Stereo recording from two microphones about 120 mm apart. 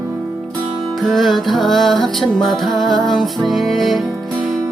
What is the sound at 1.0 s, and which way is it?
Music, centre (ahead or behind).